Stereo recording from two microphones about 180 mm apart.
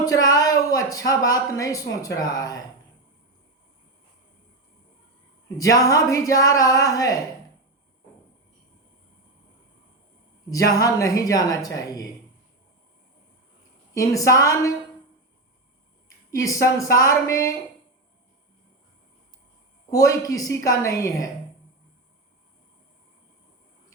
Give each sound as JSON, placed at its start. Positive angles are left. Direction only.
{"t": 0.0, "sound": "speech", "side_deg": 20}
{"t": 5.5, "sound": "speech", "side_deg": 20}
{"t": 10.5, "sound": "speech", "side_deg": 20}
{"t": 13.9, "sound": "speech", "side_deg": 20}
{"t": 16.3, "sound": "speech", "side_deg": 20}
{"t": 19.9, "sound": "speech", "side_deg": 20}